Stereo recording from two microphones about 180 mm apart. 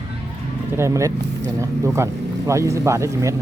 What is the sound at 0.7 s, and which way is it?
Speech, 15° right (ahead or behind).